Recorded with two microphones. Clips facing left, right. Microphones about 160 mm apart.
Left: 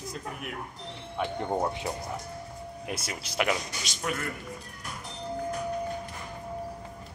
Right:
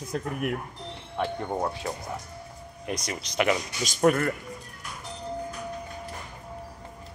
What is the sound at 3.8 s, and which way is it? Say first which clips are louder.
Speech: right 11 dB; 50° right (ahead or behind).